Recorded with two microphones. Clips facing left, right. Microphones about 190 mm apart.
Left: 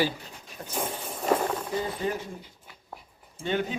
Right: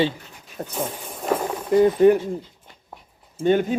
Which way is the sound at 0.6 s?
40° right (ahead or behind).